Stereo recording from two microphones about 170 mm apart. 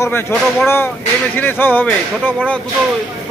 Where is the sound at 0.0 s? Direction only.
10° left (ahead or behind).